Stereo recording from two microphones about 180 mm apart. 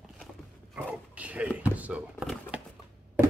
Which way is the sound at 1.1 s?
5° right (ahead or behind).